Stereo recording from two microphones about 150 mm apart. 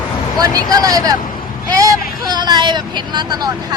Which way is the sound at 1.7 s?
25° right (ahead or behind).